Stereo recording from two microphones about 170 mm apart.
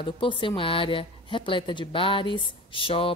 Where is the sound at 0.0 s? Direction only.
30° left (ahead or behind).